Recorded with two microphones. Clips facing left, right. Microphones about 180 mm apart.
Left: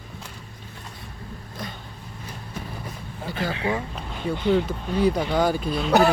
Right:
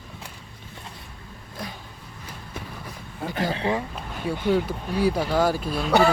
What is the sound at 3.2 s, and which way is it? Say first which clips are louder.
Speech: right 1 dB; 45° right (ahead or behind).